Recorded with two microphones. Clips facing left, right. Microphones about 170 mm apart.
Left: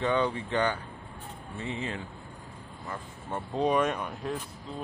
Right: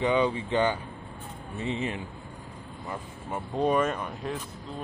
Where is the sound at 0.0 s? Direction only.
15° right (ahead or behind).